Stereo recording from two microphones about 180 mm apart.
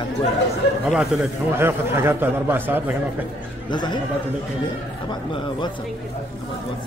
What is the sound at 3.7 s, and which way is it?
Speech, 25° left (ahead or behind).